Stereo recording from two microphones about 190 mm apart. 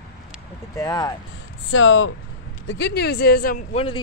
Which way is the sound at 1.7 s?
90° left.